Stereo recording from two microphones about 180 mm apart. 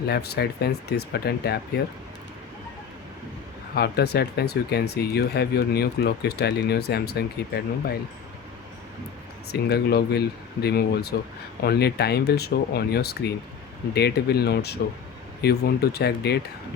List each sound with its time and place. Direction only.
0.1 s speech: 65° left (ahead or behind)
3.8 s speech: 65° left (ahead or behind)
9.5 s speech: 60° left (ahead or behind)